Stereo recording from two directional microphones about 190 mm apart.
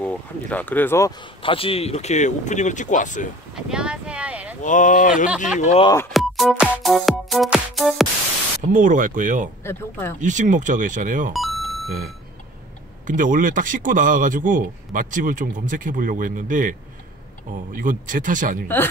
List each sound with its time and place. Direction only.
0.0 s speech: 5° left (ahead or behind)
1.4 s speech: 30° left (ahead or behind)
3.5 s a sound: 5° right (ahead or behind)
4.6 s speech: 40° left (ahead or behind)
6.1 s music: centre (ahead or behind)
8.7 s a man's voice: 45° right (ahead or behind)
9.6 s speech: 10° left (ahead or behind)
10.2 s speech: 40° right (ahead or behind)
11.3 s beep: centre (ahead or behind)
13.0 s a man's voice: 45° right (ahead or behind)
17.7 s a man's voice: 45° right (ahead or behind)